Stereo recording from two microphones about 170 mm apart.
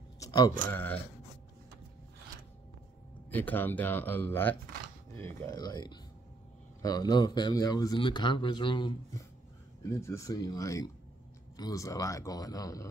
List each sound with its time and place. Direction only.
0.7 s speech: 10° left (ahead or behind)
3.3 s speech: 10° left (ahead or behind); by 9.2 s 30° left (ahead or behind)
9.8 s speech: 15° left (ahead or behind)